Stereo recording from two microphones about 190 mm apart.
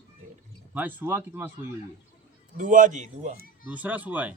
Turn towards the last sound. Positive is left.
turn(degrees=-10)  # may be behind; listen again after turning